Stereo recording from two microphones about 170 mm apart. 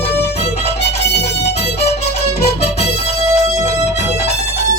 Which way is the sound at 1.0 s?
80° left.